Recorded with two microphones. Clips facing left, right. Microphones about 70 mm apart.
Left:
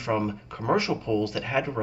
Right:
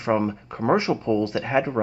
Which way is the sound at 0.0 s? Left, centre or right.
Right.